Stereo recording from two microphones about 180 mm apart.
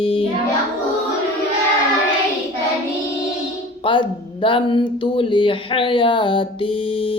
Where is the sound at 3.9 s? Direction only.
25° left (ahead or behind).